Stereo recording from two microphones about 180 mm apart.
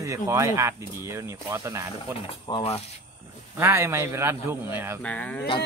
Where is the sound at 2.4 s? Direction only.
30° left (ahead or behind).